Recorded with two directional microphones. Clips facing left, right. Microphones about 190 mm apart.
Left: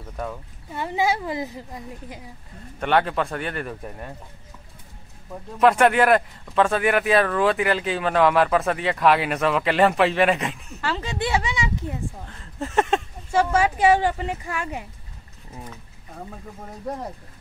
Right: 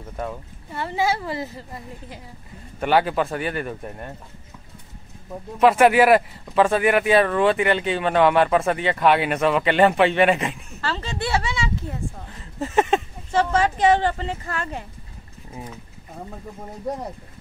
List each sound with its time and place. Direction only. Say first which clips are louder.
0.1 s speech: right 1 dB; 10° right (ahead or behind)
0.7 s speech: even; 15° left (ahead or behind)
2.8 s speech: right 2 dB; 5° right (ahead or behind)
5.6 s speech: right 2 dB; 5° right (ahead or behind)
10.8 s speech: left 1 dB; 15° left (ahead or behind)
12.3 s a sound: right 2 dB; 5° right (ahead or behind)
13.3 s speech: even; 10° left (ahead or behind)
15.5 s speech: right 3 dB; 10° right (ahead or behind)